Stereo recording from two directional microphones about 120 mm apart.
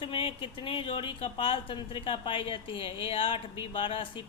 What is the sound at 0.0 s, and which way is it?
Speech, 50° left (ahead or behind).